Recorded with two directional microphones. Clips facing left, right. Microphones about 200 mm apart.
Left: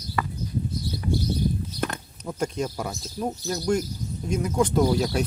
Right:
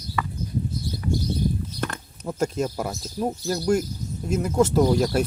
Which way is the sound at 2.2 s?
15° right (ahead or behind).